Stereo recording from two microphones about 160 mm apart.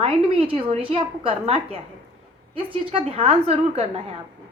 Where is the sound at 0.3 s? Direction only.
35° right (ahead or behind).